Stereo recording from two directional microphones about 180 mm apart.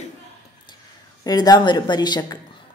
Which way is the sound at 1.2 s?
20° left (ahead or behind).